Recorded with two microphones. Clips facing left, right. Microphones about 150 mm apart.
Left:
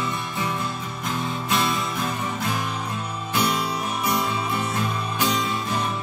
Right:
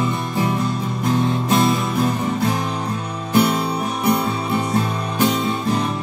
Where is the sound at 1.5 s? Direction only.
45° right (ahead or behind).